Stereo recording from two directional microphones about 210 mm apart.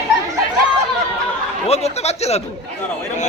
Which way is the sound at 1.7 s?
30° left (ahead or behind).